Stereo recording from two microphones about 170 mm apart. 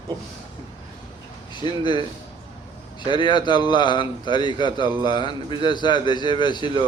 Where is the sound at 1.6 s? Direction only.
25° left (ahead or behind).